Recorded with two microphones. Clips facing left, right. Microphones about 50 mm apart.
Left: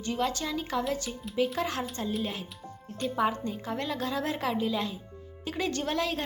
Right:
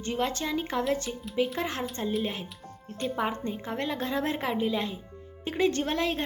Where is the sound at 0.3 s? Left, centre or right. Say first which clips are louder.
Right 1 dB; right.